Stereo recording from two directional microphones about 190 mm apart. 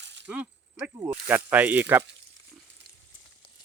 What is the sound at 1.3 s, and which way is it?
Speech, 10° right (ahead or behind).